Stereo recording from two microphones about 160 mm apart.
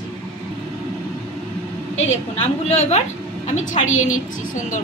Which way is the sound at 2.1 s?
45° left (ahead or behind).